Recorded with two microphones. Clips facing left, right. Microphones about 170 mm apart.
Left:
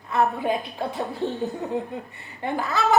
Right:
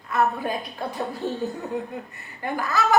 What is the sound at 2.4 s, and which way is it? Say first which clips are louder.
Speech: even; 25° left (ahead or behind).